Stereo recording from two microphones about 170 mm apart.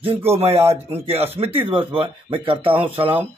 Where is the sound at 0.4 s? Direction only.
40° right (ahead or behind).